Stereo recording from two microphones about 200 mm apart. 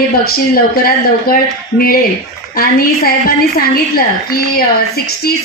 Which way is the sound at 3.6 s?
50° left (ahead or behind).